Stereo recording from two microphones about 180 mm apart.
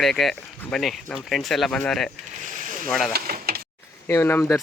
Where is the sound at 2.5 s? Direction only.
50° right (ahead or behind).